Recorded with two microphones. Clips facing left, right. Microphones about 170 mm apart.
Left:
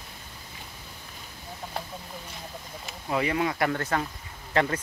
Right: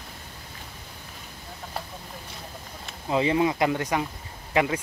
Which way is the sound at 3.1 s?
25° right (ahead or behind).